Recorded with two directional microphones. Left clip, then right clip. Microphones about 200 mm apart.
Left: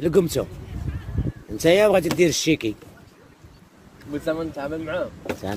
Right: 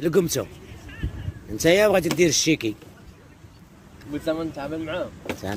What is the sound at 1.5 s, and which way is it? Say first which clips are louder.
Speech: left 1 dB; 5° left (ahead or behind).